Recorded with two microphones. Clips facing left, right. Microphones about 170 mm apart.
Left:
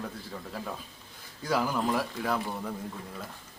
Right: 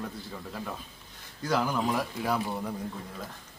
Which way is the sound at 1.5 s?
Centre (ahead or behind).